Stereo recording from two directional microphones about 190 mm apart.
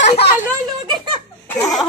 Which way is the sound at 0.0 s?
35° left (ahead or behind).